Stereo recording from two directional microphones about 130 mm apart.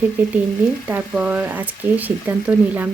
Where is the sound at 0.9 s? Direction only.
15° right (ahead or behind).